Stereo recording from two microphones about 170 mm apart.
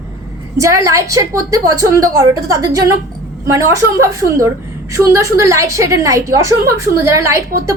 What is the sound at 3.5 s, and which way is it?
A woman's voice, 20° right (ahead or behind).